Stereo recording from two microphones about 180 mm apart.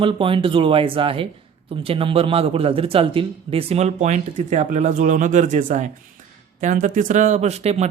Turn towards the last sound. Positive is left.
turn(degrees=-35)  # may be behind; listen again after turning